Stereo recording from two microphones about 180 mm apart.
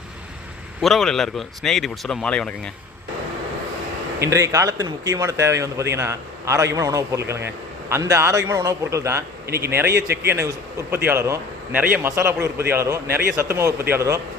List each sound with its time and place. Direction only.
0.8 s speech: centre (ahead or behind)
4.2 s speech: 15° right (ahead or behind)
9.5 s speech: 60° right (ahead or behind)
10.2 s speech: 15° right (ahead or behind)